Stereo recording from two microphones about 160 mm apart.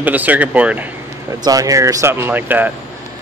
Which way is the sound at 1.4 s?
20° right (ahead or behind).